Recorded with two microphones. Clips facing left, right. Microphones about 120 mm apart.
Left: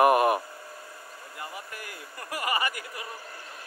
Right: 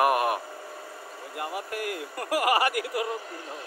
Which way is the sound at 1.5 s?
70° right (ahead or behind).